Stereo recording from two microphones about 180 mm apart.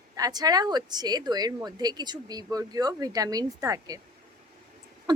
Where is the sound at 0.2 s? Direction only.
20° right (ahead or behind).